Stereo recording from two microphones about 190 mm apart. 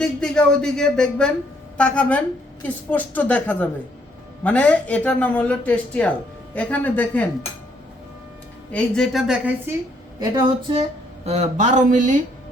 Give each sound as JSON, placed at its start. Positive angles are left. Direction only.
{"t": 0.0, "sound": "a man's voice", "side_deg": 5}
{"t": 8.7, "sound": "a man's voice", "side_deg": 5}
{"t": 10.3, "sound": "speech", "side_deg": -30}
{"t": 11.3, "sound": "speech", "side_deg": -40}